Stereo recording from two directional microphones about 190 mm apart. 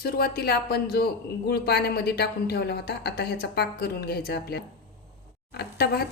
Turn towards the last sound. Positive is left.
turn(degrees=60)  # may be behind; listen again after turning